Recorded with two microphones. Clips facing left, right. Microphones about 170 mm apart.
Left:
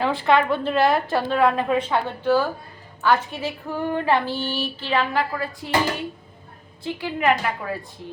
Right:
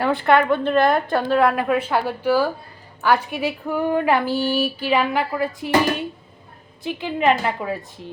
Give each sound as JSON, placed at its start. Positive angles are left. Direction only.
{"t": 0.0, "sound": "a woman's voice", "side_deg": 0}
{"t": 1.4, "sound": "a sound", "side_deg": -10}
{"t": 6.8, "sound": "a woman's voice", "side_deg": -20}